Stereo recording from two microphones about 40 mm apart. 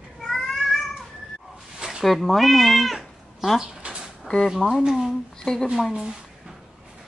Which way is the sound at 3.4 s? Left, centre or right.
Centre.